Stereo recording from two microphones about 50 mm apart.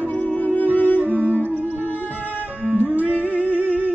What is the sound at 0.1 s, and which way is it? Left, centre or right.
Music, left.